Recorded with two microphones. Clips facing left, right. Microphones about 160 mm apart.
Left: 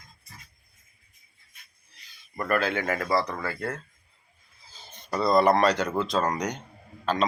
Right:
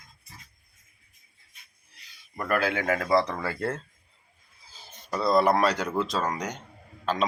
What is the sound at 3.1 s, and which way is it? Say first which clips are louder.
Speech: right 4 dB; 25° right (ahead or behind).